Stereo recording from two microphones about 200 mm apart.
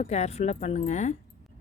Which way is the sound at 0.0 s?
35° left (ahead or behind).